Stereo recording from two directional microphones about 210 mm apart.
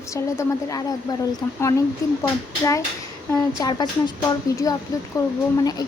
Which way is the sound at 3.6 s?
20° left (ahead or behind).